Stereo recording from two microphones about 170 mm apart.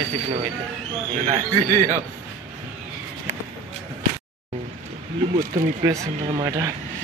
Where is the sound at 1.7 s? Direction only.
45° right (ahead or behind).